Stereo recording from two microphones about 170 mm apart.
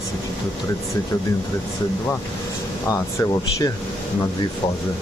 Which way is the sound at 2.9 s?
20° left (ahead or behind).